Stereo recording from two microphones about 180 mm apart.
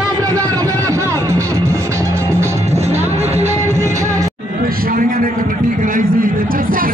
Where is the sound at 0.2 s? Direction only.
20° right (ahead or behind).